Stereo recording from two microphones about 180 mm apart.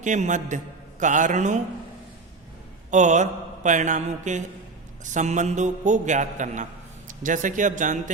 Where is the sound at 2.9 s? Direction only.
40° right (ahead or behind).